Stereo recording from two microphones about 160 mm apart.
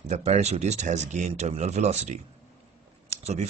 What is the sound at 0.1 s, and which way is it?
Speech, 45° right (ahead or behind).